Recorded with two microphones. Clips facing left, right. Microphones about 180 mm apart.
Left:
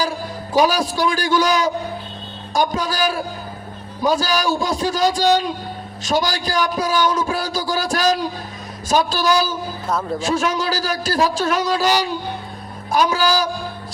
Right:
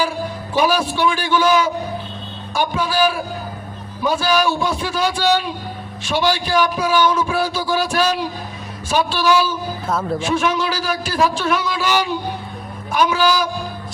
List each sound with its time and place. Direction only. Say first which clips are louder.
0.5 s a man's voice: left 1 dB; 40° left (ahead or behind)
9.8 s speech: even; centre (ahead or behind)
10.2 s a man's voice: right 1 dB; 40° left (ahead or behind)